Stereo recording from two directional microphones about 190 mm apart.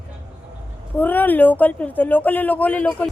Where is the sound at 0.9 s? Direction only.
10° left (ahead or behind).